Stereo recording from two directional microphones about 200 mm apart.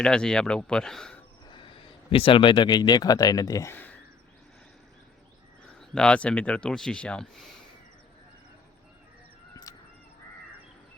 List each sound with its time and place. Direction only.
0.0 s speech: 5° left (ahead or behind)
1.5 s speech: 25° left (ahead or behind)
5.8 s speech: 5° left (ahead or behind)